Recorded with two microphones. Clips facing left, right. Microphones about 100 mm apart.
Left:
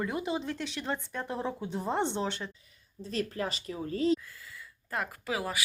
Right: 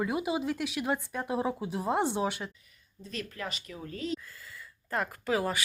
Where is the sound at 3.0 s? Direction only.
35° left (ahead or behind).